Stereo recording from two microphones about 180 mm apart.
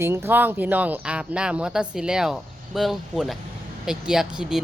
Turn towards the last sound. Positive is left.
turn(degrees=-5)  # may be behind; listen again after turning